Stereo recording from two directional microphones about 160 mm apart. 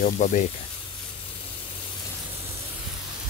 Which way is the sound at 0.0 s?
50° left (ahead or behind).